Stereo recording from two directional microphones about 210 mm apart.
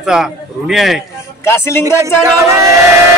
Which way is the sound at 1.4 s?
10° left (ahead or behind).